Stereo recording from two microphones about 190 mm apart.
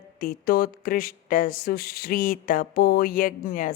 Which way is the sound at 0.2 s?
50° left (ahead or behind).